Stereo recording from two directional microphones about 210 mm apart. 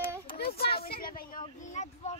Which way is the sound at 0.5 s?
50° left (ahead or behind).